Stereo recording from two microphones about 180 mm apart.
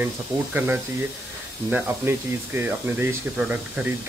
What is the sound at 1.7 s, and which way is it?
Speech, 10° right (ahead or behind).